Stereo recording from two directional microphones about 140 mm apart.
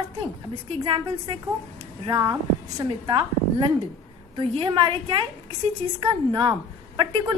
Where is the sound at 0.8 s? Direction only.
35° right (ahead or behind).